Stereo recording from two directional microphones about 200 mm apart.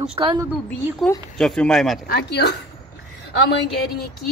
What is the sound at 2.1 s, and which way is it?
Speech, 55° left (ahead or behind).